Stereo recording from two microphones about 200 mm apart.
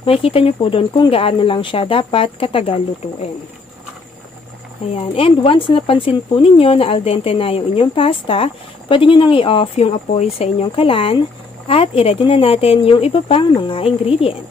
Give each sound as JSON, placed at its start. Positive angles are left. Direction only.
{"t": 0.0, "sound": "speech", "side_deg": 30}
{"t": 4.9, "sound": "speech", "side_deg": 30}